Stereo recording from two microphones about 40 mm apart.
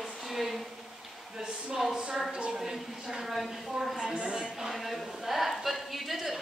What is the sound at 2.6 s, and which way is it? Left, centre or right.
A woman's voice, centre.